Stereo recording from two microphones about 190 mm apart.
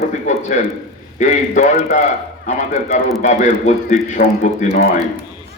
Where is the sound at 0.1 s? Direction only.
40° left (ahead or behind).